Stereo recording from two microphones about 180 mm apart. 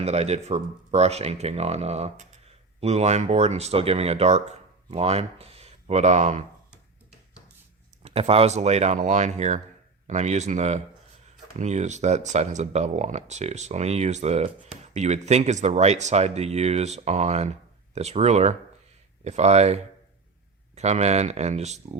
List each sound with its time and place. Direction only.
0.0 s speech: 35° right (ahead or behind)
8.0 s speech: 35° right (ahead or behind)